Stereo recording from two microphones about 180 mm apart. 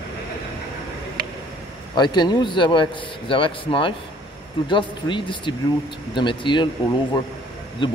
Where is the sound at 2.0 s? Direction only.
25° left (ahead or behind).